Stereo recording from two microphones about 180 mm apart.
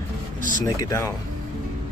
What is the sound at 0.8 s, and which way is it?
Speech, 15° left (ahead or behind).